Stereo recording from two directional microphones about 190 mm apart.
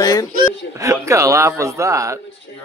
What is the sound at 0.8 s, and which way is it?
Speech, 15° right (ahead or behind).